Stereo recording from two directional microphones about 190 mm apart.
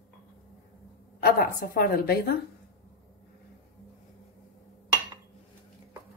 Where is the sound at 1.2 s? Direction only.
50° left (ahead or behind).